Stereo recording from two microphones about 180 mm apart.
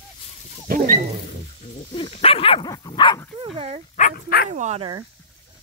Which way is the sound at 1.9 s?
30° left (ahead or behind).